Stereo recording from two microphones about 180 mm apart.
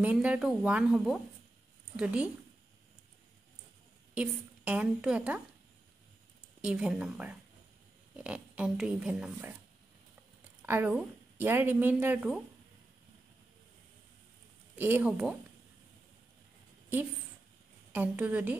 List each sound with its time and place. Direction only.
0.0 s a woman's voice: 10° right (ahead or behind)
4.1 s a woman's voice: 5° right (ahead or behind)
6.6 s a woman's voice: 5° right (ahead or behind)
10.6 s a woman's voice: 10° right (ahead or behind)
14.8 s a woman's voice: 10° right (ahead or behind)
17.9 s a woman's voice: 10° right (ahead or behind)